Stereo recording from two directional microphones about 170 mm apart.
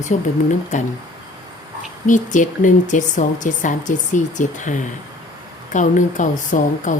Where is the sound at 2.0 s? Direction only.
45° left (ahead or behind).